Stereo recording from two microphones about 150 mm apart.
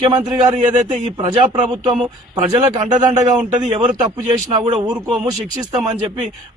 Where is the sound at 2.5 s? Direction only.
25° right (ahead or behind).